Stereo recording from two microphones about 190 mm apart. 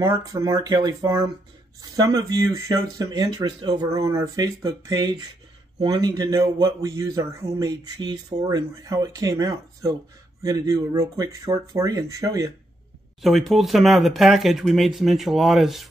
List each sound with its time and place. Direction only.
0.0 s speech: 15° right (ahead or behind)
13.2 s speech: centre (ahead or behind)